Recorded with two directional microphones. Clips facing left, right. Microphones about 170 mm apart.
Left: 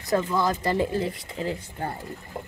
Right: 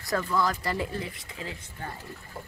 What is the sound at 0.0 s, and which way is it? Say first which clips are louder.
Speech: left 3 dB; 20° left (ahead or behind).